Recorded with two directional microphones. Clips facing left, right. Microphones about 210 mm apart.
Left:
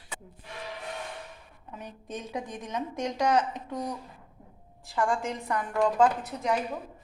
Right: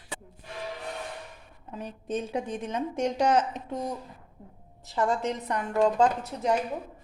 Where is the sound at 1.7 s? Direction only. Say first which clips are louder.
Right 6 dB; 30° right (ahead or behind).